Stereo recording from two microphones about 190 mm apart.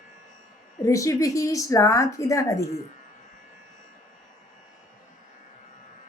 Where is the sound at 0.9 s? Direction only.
15° left (ahead or behind).